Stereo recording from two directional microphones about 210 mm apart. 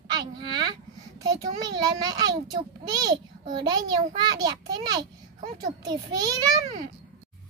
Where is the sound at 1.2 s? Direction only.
20° right (ahead or behind).